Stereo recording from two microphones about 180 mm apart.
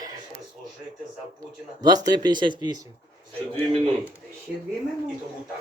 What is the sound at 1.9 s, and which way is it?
Speech, 20° right (ahead or behind).